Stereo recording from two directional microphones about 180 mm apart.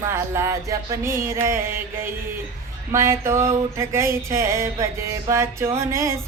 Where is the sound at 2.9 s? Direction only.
15° right (ahead or behind).